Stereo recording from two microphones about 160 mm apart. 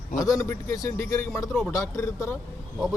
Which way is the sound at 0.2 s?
20° left (ahead or behind).